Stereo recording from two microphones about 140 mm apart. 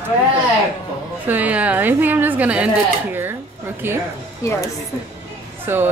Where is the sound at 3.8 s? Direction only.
15° right (ahead or behind).